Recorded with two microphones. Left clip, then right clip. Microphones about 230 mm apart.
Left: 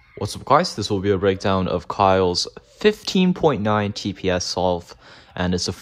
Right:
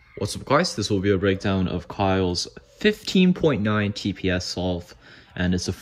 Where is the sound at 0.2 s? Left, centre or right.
Centre.